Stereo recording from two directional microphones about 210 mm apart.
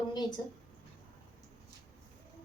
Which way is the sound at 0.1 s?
20° left (ahead or behind).